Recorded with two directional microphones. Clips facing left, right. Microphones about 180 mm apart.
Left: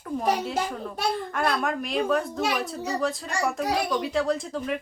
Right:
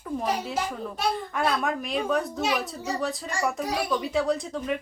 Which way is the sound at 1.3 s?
Centre (ahead or behind).